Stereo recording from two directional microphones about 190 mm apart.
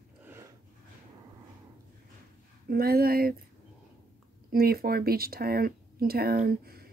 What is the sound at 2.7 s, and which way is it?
Speech, 50° right (ahead or behind).